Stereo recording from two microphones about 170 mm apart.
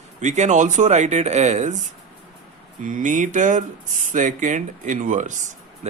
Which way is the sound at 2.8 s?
50° right (ahead or behind).